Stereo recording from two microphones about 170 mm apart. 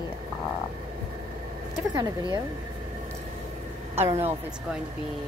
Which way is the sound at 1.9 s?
25° right (ahead or behind).